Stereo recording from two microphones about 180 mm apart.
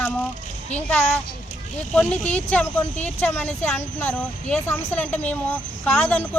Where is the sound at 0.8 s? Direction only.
10° left (ahead or behind).